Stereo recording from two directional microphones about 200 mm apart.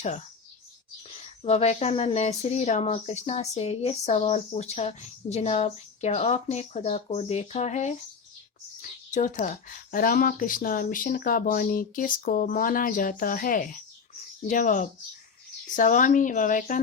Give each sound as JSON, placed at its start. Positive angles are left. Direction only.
{"t": 1.4, "sound": "speech", "side_deg": 30}